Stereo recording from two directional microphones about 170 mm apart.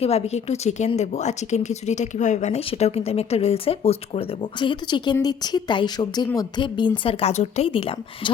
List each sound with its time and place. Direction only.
0.0 s a woman's voice: 40° left (ahead or behind)